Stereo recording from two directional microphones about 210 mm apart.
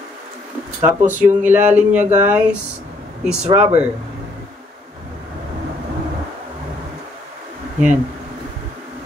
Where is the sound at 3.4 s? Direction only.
30° right (ahead or behind).